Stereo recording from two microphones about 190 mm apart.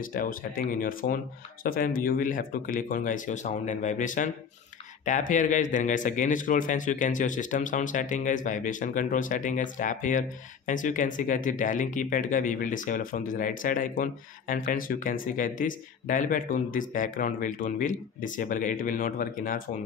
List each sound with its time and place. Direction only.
0.0 s speech: 45° left (ahead or behind)